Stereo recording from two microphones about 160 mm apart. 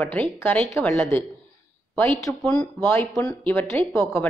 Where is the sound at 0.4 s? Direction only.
10° left (ahead or behind).